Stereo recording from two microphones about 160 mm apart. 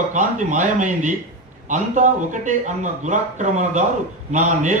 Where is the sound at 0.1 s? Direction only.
50° right (ahead or behind).